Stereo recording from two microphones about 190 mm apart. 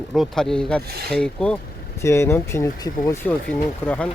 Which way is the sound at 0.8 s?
55° right (ahead or behind).